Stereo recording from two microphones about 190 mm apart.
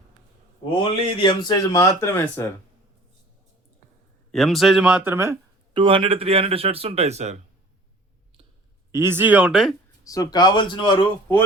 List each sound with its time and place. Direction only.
0.8 s speech: 25° left (ahead or behind)
4.3 s speech: centre (ahead or behind)
5.7 s a man's voice: 25° right (ahead or behind)
8.9 s speech: 15° right (ahead or behind)
10.0 s speech: 20° left (ahead or behind)